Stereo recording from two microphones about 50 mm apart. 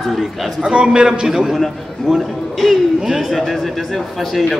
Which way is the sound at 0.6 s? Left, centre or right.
Centre.